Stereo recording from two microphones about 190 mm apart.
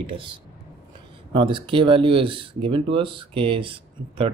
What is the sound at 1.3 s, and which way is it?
Speech, 25° right (ahead or behind).